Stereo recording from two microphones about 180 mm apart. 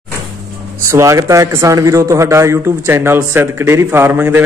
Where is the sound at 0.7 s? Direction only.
15° right (ahead or behind).